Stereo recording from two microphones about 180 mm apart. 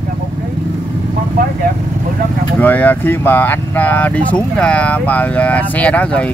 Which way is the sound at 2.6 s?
10° left (ahead or behind).